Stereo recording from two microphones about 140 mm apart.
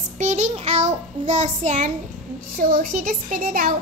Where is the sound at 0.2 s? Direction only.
60° right (ahead or behind).